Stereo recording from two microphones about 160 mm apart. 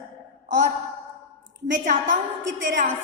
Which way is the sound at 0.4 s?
50° right (ahead or behind).